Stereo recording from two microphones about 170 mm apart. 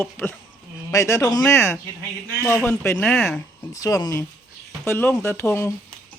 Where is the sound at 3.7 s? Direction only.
20° left (ahead or behind).